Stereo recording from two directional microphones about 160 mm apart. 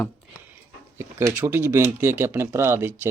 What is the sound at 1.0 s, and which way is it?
Speech, 15° right (ahead or behind).